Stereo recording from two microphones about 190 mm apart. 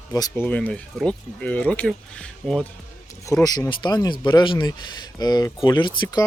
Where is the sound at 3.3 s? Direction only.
20° left (ahead or behind).